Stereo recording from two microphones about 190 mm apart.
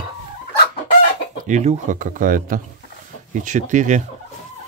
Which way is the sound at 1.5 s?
40° right (ahead or behind).